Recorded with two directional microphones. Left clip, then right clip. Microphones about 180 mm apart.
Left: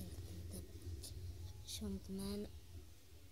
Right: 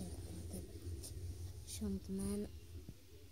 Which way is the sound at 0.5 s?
5° right (ahead or behind).